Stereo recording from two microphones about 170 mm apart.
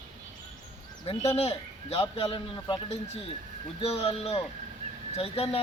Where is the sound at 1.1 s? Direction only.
35° left (ahead or behind).